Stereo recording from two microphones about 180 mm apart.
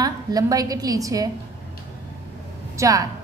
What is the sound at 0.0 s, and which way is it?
A woman's voice, 20° right (ahead or behind).